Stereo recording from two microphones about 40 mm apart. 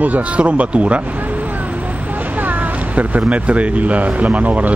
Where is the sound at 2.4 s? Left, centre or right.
Right.